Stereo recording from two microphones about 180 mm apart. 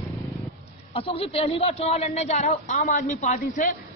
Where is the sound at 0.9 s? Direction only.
30° left (ahead or behind).